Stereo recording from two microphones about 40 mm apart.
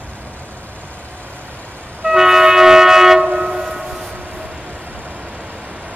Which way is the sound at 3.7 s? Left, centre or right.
Centre.